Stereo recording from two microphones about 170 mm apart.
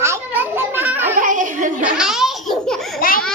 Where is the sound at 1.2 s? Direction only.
50° right (ahead or behind).